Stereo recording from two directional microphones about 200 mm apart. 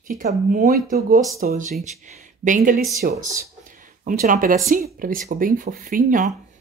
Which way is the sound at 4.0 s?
40° right (ahead or behind).